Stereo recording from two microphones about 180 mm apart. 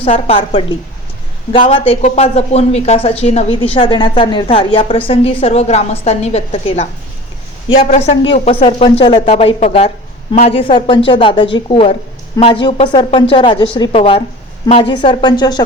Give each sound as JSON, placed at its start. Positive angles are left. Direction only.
{"t": 0.0, "sound": "a woman's voice", "side_deg": 30}
{"t": 1.7, "sound": "a woman's voice", "side_deg": 30}